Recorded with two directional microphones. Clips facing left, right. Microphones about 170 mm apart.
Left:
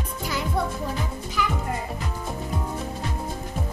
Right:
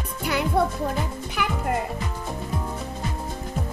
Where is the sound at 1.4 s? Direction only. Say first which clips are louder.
Even; 60° right (ahead or behind).